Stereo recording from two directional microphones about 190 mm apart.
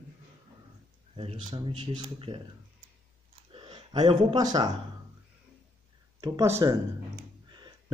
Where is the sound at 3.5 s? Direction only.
25° right (ahead or behind).